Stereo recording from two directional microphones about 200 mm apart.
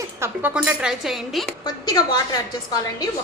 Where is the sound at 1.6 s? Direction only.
20° left (ahead or behind).